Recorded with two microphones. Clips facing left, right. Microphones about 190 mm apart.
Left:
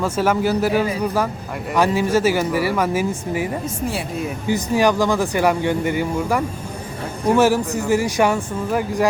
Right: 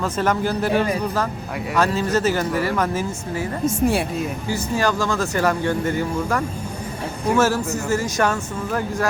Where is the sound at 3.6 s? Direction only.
55° right (ahead or behind).